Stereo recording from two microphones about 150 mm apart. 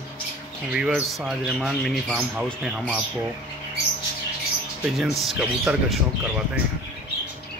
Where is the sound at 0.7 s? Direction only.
5° right (ahead or behind).